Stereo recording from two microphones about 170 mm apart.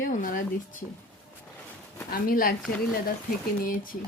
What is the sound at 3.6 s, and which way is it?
Speech, 55° left (ahead or behind).